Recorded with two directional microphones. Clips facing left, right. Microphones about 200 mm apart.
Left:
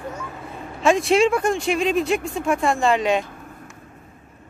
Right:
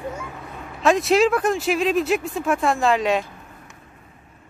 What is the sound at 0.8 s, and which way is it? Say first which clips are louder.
Speech: even; centre (ahead or behind).